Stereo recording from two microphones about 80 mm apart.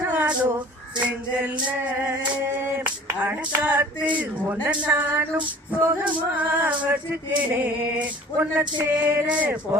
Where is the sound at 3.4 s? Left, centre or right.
Right.